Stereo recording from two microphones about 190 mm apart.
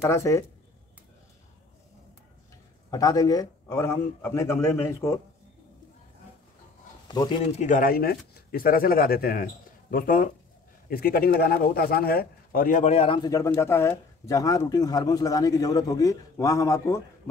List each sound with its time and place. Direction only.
0.0 s a man's voice: 15° left (ahead or behind)
2.9 s a man's voice: 20° left (ahead or behind)
7.1 s speech: 25° left (ahead or behind)
7.5 s a man's voice: 40° left (ahead or behind); by 17.0 s 15° left (ahead or behind)